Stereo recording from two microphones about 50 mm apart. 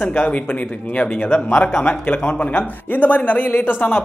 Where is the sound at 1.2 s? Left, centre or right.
Left.